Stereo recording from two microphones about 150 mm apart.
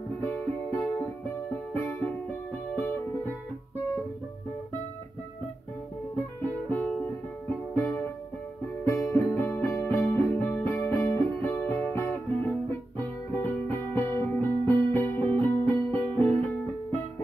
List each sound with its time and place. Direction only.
0.3 s music: 20° left (ahead or behind)
6.7 s music: 10° left (ahead or behind)